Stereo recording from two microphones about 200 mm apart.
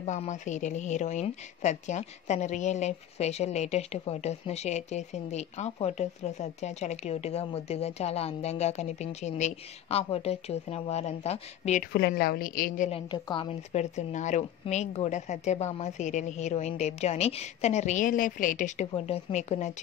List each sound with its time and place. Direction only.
0.0 s a woman's voice: 35° left (ahead or behind)
11.9 s a woman's voice: 55° left (ahead or behind)
13.1 s a woman's voice: 25° left (ahead or behind)